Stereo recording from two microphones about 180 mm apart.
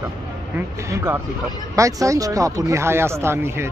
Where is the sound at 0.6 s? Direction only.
15° right (ahead or behind).